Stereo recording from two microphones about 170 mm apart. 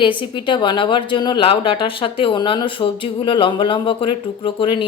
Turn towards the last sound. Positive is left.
turn(degrees=30)  # may be behind; listen again after turning